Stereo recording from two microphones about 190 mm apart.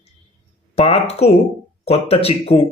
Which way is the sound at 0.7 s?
30° left (ahead or behind).